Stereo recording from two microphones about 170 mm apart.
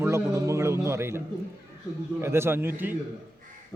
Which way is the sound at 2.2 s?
15° right (ahead or behind).